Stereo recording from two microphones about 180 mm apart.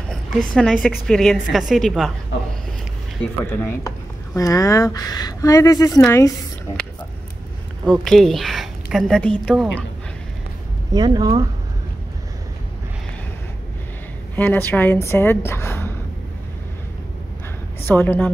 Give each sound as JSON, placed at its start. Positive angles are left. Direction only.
{"t": 0.1, "sound": "a woman's voice", "side_deg": 5}
{"t": 3.6, "sound": "speech", "side_deg": 20}
{"t": 7.8, "sound": "a woman's voice", "side_deg": 0}
{"t": 10.9, "sound": "speech", "side_deg": -20}
{"t": 14.3, "sound": "a woman's voice", "side_deg": 10}
{"t": 17.8, "sound": "a woman's voice", "side_deg": 10}